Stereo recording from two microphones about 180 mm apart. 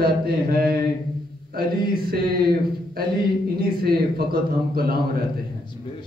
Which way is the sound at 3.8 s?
55° right (ahead or behind).